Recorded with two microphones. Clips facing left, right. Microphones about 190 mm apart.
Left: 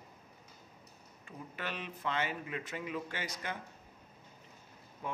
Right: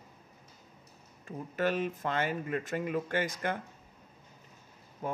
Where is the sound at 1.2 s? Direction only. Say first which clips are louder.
Right 11 dB; 45° right (ahead or behind).